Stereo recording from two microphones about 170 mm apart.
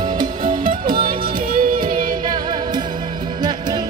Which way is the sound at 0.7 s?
55° right (ahead or behind).